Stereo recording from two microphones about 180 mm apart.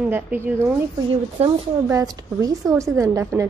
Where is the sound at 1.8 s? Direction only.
20° right (ahead or behind).